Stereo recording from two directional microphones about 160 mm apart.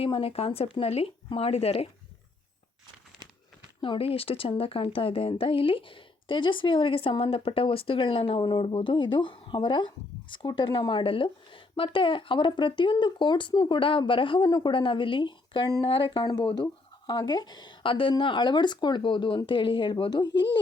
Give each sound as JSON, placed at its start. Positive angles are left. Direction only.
{"t": 0.0, "sound": "a woman's voice", "side_deg": 35}
{"t": 3.8, "sound": "a woman's voice", "side_deg": 35}
{"t": 20.3, "sound": "speech", "side_deg": 90}